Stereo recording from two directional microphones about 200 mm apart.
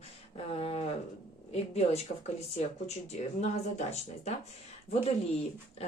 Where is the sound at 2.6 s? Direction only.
35° left (ahead or behind).